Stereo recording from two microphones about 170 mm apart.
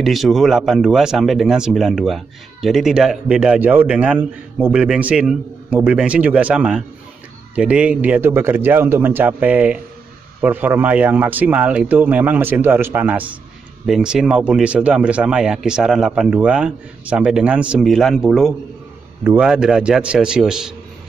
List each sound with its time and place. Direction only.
0.0 s a man's voice: centre (ahead or behind)